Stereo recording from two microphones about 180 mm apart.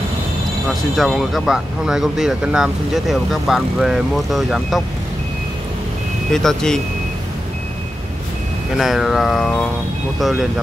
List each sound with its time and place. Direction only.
0.9 s speech: centre (ahead or behind)
6.3 s speech: 5° left (ahead or behind)
8.7 s speech: centre (ahead or behind)